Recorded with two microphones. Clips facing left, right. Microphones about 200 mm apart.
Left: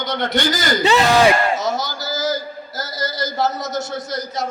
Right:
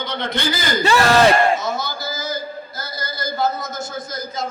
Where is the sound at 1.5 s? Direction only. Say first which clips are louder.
Left 1 dB; 40° left (ahead or behind).